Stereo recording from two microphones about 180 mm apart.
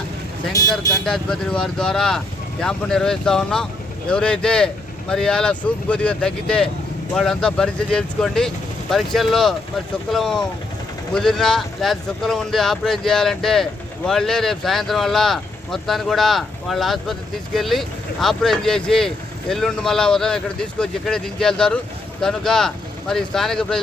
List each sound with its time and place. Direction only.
0.8 s speech: 20° left (ahead or behind)
1.0 s speech: 5° left (ahead or behind)